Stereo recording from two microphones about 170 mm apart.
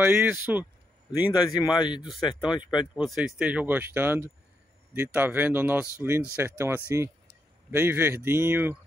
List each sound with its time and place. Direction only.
0.0 s speech: 10° right (ahead or behind)
1.6 s speech: 25° left (ahead or behind)
2.9 s speech: 5° right (ahead or behind)